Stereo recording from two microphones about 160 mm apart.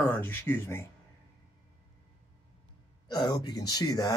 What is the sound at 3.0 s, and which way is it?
Speech, 25° left (ahead or behind).